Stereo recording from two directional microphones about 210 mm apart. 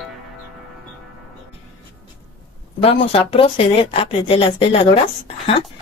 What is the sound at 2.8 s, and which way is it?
Speech, 30° left (ahead or behind).